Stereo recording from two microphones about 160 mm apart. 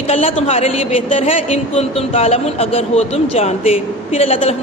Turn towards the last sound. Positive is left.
turn(degrees=40)  # may be behind; listen again after turning